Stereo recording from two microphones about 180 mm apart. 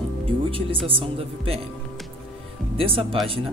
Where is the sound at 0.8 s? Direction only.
30° right (ahead or behind).